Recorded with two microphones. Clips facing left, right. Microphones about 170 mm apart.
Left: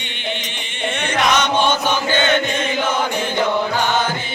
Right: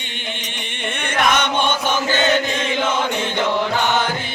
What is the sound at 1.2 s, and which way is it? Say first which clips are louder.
Chant: left 1 dB; 55° right (ahead or behind).